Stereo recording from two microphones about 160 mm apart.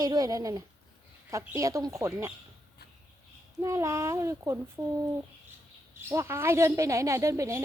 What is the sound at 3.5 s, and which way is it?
Speech, 20° right (ahead or behind).